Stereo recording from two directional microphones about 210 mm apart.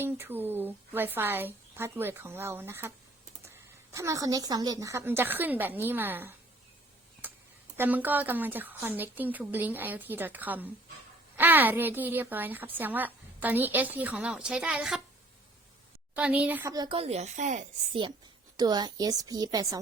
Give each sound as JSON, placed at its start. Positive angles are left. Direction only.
{"t": 0.0, "sound": "a woman's voice", "side_deg": -10}
{"t": 3.9, "sound": "a woman's voice", "side_deg": -15}
{"t": 7.2, "sound": "a sound", "side_deg": -10}
{"t": 7.8, "sound": "a woman's voice", "side_deg": -10}
{"t": 16.1, "sound": "a woman's voice", "side_deg": -5}
{"t": 18.5, "sound": "a woman's voice", "side_deg": -20}